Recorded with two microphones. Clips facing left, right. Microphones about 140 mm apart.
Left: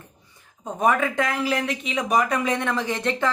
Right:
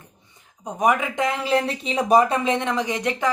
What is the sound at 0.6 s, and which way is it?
Speech, 15° right (ahead or behind).